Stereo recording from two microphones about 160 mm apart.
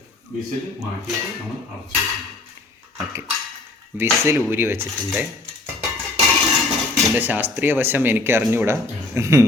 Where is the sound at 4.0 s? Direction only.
15° right (ahead or behind).